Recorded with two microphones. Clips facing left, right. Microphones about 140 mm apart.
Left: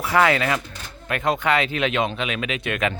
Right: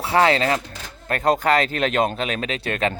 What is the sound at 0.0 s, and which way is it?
Speech, 30° right (ahead or behind).